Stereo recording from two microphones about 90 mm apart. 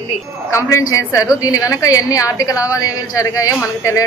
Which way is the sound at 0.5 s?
35° left (ahead or behind).